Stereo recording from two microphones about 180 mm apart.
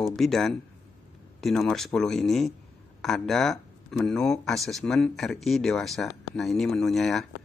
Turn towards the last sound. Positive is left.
turn(degrees=0)  # may be behind; listen again after turning